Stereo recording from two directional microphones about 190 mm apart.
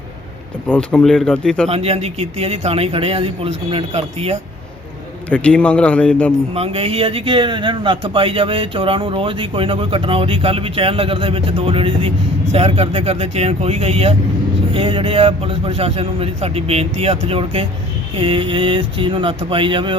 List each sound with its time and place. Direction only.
0.7 s speech: 5° left (ahead or behind)
1.7 s speech: 30° right (ahead or behind)
5.3 s a man's voice: 5° left (ahead or behind)
6.5 s a man's voice: 30° right (ahead or behind)